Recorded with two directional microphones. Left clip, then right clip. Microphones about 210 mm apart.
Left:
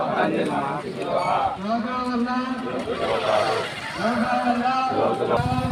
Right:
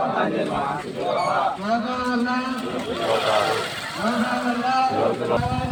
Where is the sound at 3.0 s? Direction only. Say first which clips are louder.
Right 1 dB; 45° right (ahead or behind).